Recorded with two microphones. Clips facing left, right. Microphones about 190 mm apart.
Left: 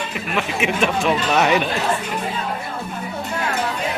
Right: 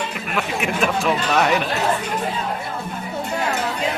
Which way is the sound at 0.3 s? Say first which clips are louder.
Left 1 dB; centre (ahead or behind).